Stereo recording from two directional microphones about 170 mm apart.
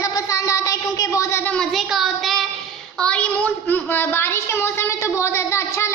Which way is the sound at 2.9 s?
5° left (ahead or behind).